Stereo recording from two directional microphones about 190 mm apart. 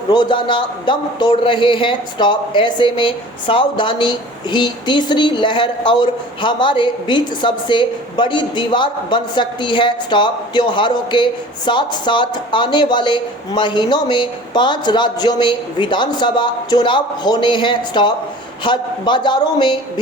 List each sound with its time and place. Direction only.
0.1 s a man's voice: 25° left (ahead or behind)